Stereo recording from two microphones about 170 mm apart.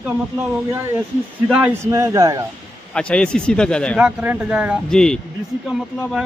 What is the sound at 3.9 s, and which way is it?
Speech, 10° right (ahead or behind).